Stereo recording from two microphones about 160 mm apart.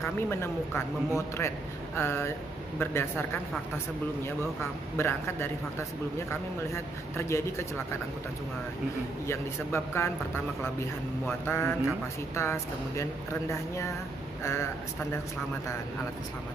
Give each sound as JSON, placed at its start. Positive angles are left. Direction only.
{"t": 0.0, "sound": "speech", "side_deg": 15}
{"t": 4.9, "sound": "speech", "side_deg": 15}
{"t": 6.7, "sound": "speech", "side_deg": 15}
{"t": 9.3, "sound": "speech", "side_deg": 15}
{"t": 11.2, "sound": "speech", "side_deg": 15}